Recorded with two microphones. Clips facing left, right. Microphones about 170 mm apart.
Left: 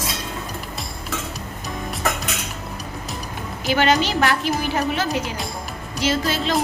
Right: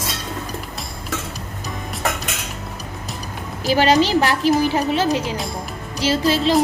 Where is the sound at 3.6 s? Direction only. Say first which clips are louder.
Right 3 dB; 35° right (ahead or behind).